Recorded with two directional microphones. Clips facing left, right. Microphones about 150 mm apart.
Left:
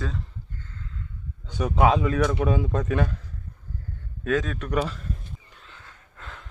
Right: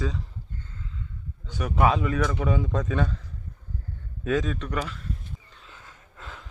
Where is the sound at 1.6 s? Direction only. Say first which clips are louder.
Left 2 dB; 20° left (ahead or behind).